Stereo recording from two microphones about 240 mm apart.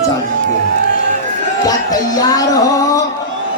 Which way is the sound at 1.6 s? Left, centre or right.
Centre.